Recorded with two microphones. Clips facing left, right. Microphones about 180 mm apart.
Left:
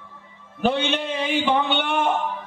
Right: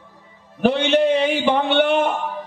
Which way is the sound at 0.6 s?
65° right (ahead or behind).